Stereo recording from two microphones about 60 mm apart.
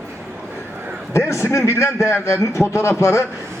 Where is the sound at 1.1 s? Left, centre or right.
Left.